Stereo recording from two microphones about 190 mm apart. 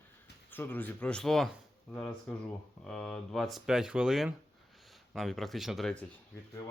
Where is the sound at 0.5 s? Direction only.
10° left (ahead or behind).